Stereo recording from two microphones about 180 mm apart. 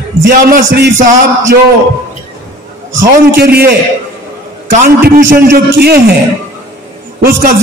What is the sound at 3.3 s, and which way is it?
Speech, 60° right (ahead or behind).